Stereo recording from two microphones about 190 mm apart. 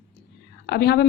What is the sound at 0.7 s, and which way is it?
Speech, 55° left (ahead or behind).